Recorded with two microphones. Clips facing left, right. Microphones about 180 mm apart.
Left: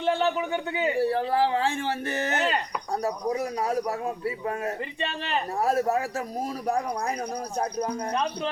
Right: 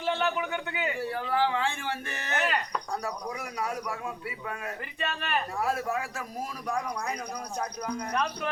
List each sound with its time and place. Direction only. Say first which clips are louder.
0.1 s a man's voice: left 4 dB; 30° left (ahead or behind)
5.0 s speech: left 1 dB; 25° left (ahead or behind)
5.5 s a man's voice: left 9 dB; 35° left (ahead or behind)